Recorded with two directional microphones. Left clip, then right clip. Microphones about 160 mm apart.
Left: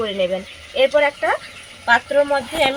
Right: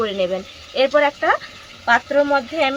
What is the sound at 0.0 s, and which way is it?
Speech, 15° right (ahead or behind).